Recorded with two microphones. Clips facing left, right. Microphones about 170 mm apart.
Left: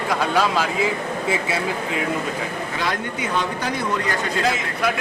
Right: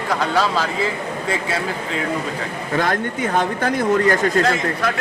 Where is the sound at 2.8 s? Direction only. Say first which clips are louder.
Right 5 dB; 50° right (ahead or behind).